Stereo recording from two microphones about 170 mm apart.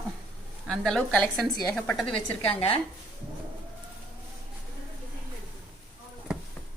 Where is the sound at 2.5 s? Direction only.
35° left (ahead or behind).